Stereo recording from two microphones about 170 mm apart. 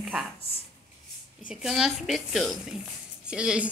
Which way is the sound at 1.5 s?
5° right (ahead or behind).